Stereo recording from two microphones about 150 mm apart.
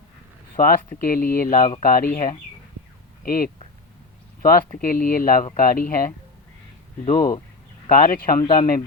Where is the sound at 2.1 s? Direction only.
55° left (ahead or behind).